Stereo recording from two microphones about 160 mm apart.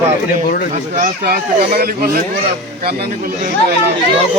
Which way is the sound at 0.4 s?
65° left (ahead or behind).